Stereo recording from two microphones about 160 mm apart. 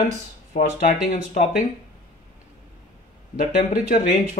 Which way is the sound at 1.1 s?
50° left (ahead or behind).